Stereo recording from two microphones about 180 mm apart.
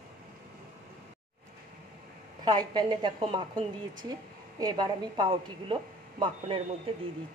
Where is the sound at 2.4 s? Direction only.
25° right (ahead or behind).